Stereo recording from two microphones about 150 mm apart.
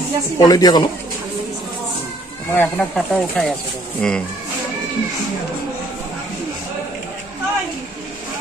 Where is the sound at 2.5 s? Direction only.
15° left (ahead or behind).